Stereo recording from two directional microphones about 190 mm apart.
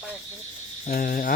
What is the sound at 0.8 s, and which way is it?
Speech, 45° left (ahead or behind).